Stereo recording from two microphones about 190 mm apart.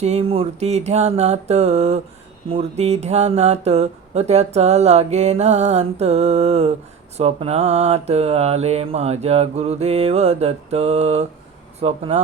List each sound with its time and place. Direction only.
0.0 s speech: 35° right (ahead or behind)